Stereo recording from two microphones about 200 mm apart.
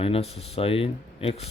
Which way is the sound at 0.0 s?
30° left (ahead or behind).